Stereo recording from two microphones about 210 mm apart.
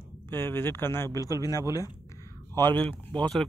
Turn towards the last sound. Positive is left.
turn(degrees=5)  # may be behind; listen again after turning